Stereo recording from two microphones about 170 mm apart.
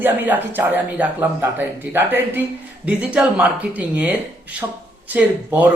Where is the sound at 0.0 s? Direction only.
10° right (ahead or behind).